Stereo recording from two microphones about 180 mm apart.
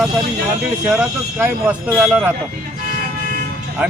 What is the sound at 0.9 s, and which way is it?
Speech, 10° right (ahead or behind).